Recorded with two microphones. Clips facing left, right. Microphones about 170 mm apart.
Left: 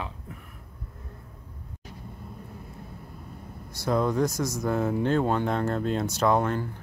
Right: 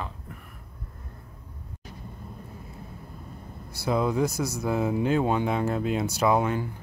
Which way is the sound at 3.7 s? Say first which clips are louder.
Even; 5° right (ahead or behind).